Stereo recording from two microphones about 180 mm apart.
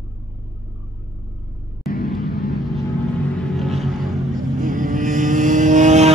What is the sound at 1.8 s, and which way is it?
Vehicle, 55° left (ahead or behind).